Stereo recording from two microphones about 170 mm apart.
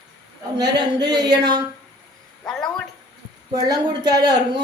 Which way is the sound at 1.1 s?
25° right (ahead or behind).